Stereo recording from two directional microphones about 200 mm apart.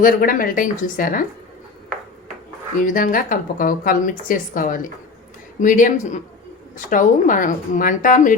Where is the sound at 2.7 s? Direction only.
40° left (ahead or behind).